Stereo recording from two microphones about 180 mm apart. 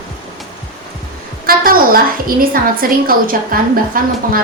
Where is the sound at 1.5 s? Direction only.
55° right (ahead or behind).